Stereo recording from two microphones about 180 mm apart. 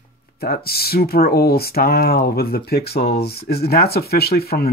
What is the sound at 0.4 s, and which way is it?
Speech, 55° left (ahead or behind).